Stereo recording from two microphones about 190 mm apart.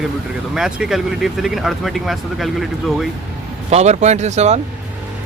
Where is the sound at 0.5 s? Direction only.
5° right (ahead or behind).